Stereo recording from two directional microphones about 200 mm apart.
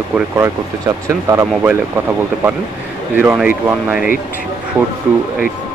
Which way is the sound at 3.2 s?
10° right (ahead or behind).